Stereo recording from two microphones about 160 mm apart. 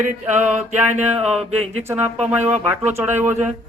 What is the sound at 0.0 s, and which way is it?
Speech, 10° right (ahead or behind).